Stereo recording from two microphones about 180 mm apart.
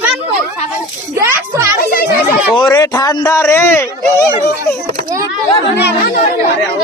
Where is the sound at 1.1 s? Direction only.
15° right (ahead or behind).